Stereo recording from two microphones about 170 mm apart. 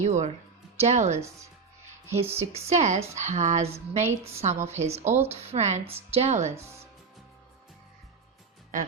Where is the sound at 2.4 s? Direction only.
40° right (ahead or behind).